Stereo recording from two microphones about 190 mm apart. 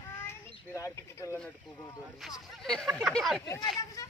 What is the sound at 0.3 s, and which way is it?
Speech, 15° left (ahead or behind).